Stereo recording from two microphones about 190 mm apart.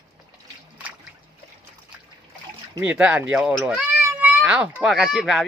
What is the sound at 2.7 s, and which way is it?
Speech, 10° right (ahead or behind).